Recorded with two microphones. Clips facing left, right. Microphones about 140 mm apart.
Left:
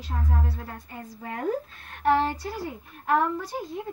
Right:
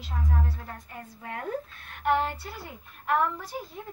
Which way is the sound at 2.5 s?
40° left (ahead or behind).